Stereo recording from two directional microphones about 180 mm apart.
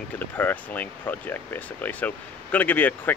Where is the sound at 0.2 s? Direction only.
10° left (ahead or behind).